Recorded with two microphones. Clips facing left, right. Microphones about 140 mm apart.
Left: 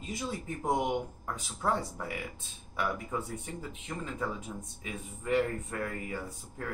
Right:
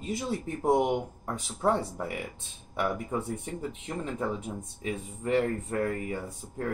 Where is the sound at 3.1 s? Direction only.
25° right (ahead or behind).